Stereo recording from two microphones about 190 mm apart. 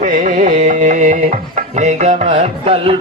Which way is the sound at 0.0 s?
45° right (ahead or behind).